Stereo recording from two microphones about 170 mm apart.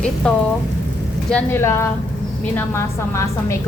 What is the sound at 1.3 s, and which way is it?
Speech, 10° left (ahead or behind).